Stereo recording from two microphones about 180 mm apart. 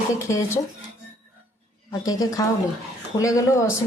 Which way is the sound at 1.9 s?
20° left (ahead or behind).